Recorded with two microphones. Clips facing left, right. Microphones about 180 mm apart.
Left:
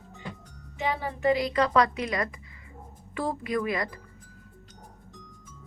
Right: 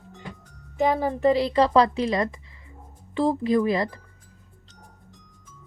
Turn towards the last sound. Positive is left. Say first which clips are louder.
# right 7 dB
turn(degrees=-25)  # may be behind; listen again after turning